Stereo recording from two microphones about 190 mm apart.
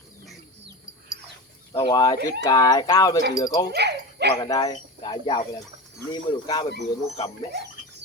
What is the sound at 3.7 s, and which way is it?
Dog, 60° right (ahead or behind).